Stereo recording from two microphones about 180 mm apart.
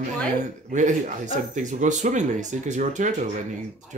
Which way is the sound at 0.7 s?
45° right (ahead or behind).